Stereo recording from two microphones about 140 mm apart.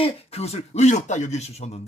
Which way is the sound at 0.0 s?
45° left (ahead or behind).